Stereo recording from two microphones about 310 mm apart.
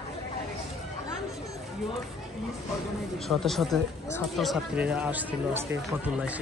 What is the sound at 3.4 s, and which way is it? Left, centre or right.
Speech, centre.